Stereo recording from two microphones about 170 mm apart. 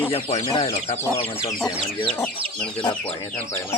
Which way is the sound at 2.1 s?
5° left (ahead or behind).